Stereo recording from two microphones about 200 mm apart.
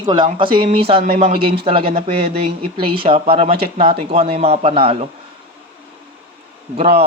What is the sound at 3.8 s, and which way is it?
Speech, 30° right (ahead or behind).